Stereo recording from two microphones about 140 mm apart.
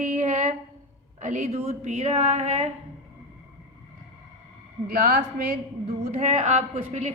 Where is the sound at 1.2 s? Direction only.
60° right (ahead or behind).